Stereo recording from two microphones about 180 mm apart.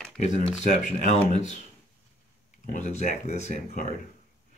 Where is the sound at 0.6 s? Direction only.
40° left (ahead or behind).